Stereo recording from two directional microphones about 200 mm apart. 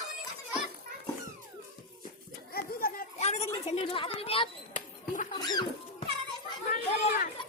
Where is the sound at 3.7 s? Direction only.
25° left (ahead or behind).